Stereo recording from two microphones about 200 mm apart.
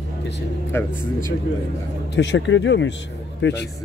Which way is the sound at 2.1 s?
65° left (ahead or behind).